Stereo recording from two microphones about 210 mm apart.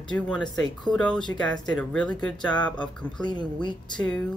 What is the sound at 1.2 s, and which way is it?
Speech, 20° left (ahead or behind).